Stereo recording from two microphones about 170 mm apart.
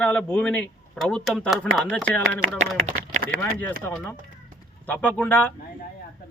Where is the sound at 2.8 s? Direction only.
45° right (ahead or behind).